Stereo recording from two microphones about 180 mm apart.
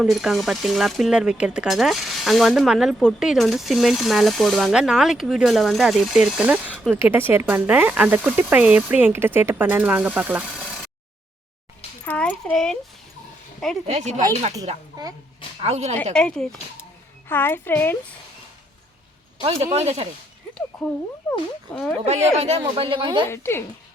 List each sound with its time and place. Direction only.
0.0 s speech: centre (ahead or behind)
12.0 s speech: 5° left (ahead or behind)
13.8 s speech: 40° right (ahead or behind)
14.9 s speech: 20° right (ahead or behind)
15.6 s speech: 35° right (ahead or behind)
16.1 s speech: 5° left (ahead or behind)
19.4 s speech: 30° right (ahead or behind)
20.7 s speech: centre (ahead or behind)
22.0 s speech: 35° right (ahead or behind)
23.3 s speech: 15° left (ahead or behind)